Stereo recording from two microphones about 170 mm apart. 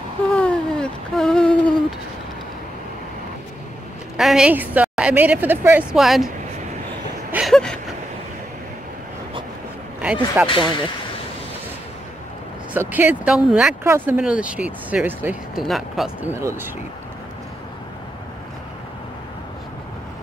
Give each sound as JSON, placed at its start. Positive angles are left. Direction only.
{"t": 0.3, "sound": "a sound", "side_deg": 5}
{"t": 4.2, "sound": "a woman's voice", "side_deg": -5}
{"t": 7.2, "sound": "a sound", "side_deg": -10}
{"t": 7.5, "sound": "gasp", "side_deg": 5}
{"t": 10.4, "sound": "speech", "side_deg": 30}
{"t": 12.7, "sound": "a woman's voice", "side_deg": -10}
{"t": 16.3, "sound": "a woman's voice", "side_deg": -15}